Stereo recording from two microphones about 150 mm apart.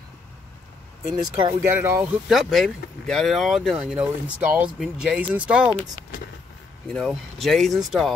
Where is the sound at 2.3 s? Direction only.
Centre (ahead or behind).